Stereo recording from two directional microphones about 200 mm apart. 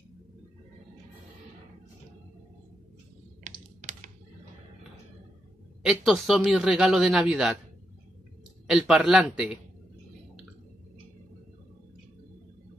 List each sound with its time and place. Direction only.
3.4 s typing: 40° right (ahead or behind)
5.9 s a man's voice: centre (ahead or behind)
8.6 s a man's voice: 5° right (ahead or behind)